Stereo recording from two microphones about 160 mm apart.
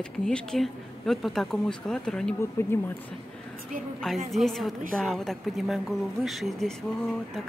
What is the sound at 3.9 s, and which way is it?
Speech, centre (ahead or behind).